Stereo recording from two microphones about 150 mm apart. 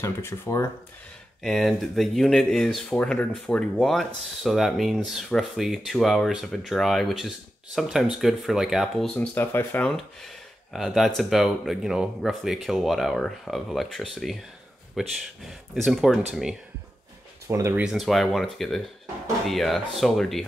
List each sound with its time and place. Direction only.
0.0 s speech: 15° left (ahead or behind)
1.4 s speech: centre (ahead or behind)
9.8 s speech: centre (ahead or behind)
17.5 s speech: 20° right (ahead or behind)
17.8 s speech: centre (ahead or behind)